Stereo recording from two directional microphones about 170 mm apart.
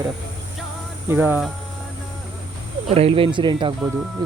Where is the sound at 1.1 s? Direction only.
10° right (ahead or behind).